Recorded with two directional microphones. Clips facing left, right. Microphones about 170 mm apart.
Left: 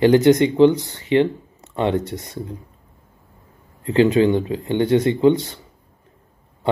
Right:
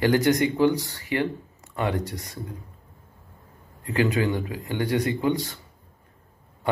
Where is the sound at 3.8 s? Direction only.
20° left (ahead or behind).